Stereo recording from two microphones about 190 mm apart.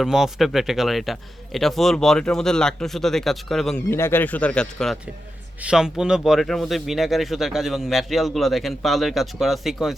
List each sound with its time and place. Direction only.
0.0 s speech: centre (ahead or behind)
3.8 s speech: 10° left (ahead or behind)